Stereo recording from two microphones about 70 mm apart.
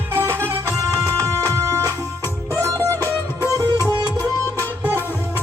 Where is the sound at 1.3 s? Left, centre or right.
Right.